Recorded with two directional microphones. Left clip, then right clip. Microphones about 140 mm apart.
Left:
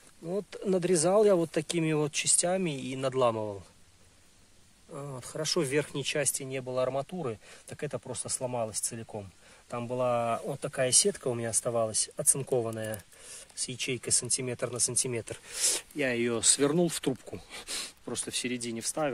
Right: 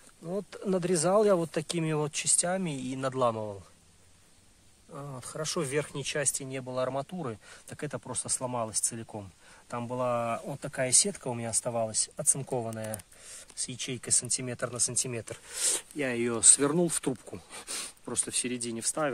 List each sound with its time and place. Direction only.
0.3 s speech: 20° left (ahead or behind); by 3.6 s 35° left (ahead or behind)
4.9 s speech: 40° left (ahead or behind)
15.5 s speech: 20° left (ahead or behind)